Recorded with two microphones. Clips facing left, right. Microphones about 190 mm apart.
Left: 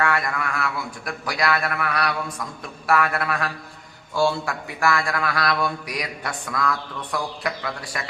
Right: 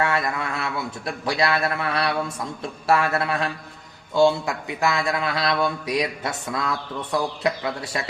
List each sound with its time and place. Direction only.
0.0 s a man's voice: 25° right (ahead or behind)